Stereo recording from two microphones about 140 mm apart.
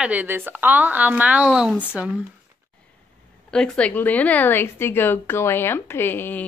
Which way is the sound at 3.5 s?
5° left (ahead or behind).